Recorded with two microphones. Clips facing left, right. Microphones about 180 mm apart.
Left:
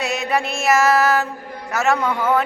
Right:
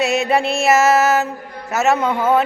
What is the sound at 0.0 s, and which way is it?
Mantra, 25° right (ahead or behind).